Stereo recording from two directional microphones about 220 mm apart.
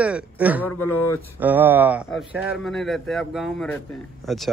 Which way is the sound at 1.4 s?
10° right (ahead or behind).